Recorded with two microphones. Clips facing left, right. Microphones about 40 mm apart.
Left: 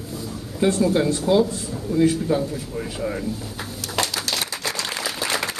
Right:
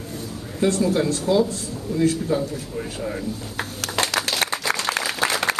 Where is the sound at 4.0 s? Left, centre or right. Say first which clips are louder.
Right 1 dB; centre.